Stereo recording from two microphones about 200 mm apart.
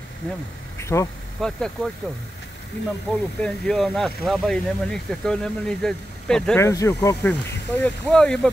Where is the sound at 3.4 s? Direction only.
5° left (ahead or behind).